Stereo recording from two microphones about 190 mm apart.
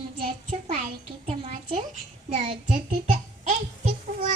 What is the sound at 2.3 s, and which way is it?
Child singing, 35° right (ahead or behind).